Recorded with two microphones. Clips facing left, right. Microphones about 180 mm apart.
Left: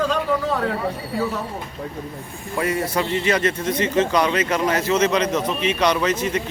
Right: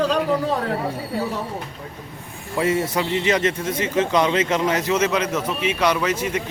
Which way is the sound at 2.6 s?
20° right (ahead or behind).